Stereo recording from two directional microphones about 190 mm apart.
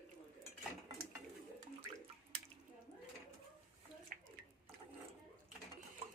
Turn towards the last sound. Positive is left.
turn(degrees=-50)  # may be behind; listen again after turning